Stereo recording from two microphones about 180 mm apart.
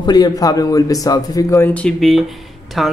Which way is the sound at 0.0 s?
20° left (ahead or behind).